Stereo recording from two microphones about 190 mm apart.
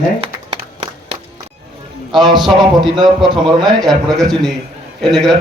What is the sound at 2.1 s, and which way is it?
A man's voice, centre (ahead or behind).